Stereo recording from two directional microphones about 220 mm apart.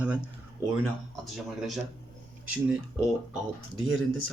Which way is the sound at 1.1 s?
Centre (ahead or behind).